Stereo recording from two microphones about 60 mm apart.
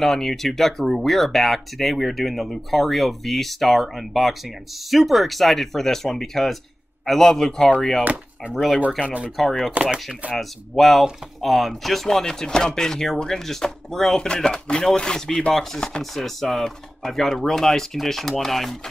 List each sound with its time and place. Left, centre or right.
0.0 s speech: centre
8.0 s speech: right
9.4 s speech: centre